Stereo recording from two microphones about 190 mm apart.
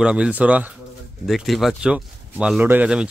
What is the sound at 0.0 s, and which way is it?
Speech, 5° right (ahead or behind).